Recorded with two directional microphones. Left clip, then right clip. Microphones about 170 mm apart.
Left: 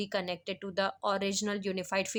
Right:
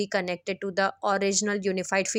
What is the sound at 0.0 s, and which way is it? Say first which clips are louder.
Speech: right 6 dB; 40° right (ahead or behind).